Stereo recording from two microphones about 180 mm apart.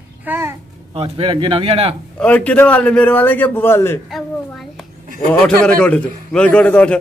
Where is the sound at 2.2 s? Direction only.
10° left (ahead or behind).